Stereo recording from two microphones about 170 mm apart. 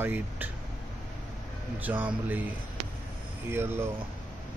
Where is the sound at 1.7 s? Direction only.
10° right (ahead or behind).